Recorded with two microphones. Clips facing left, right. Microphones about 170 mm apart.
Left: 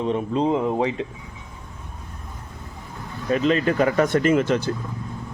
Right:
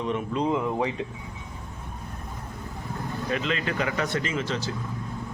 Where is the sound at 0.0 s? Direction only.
30° left (ahead or behind).